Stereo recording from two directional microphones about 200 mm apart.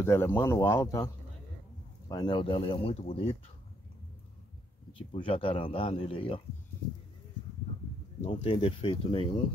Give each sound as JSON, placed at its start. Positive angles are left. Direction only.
{"t": 0.0, "sound": "speech", "side_deg": 10}
{"t": 4.9, "sound": "speech", "side_deg": 25}
{"t": 8.2, "sound": "speech", "side_deg": 25}